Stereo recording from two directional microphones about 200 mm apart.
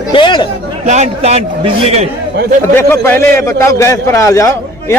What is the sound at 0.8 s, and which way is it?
Speech, 35° right (ahead or behind).